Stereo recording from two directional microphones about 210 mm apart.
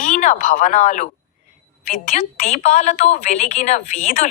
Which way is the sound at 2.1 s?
30° left (ahead or behind).